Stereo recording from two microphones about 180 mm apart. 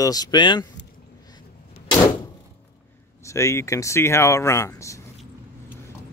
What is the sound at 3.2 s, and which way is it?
Speech, 15° left (ahead or behind).